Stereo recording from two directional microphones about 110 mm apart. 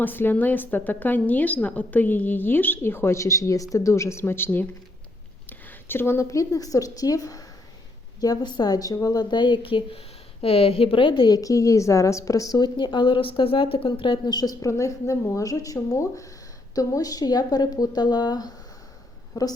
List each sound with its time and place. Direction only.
0.0 s a woman's voice: 20° left (ahead or behind); by 19.5 s 35° left (ahead or behind)